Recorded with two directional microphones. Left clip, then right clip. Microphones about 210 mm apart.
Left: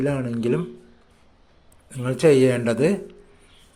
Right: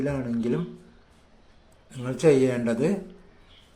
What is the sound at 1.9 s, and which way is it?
A man's voice, 35° left (ahead or behind).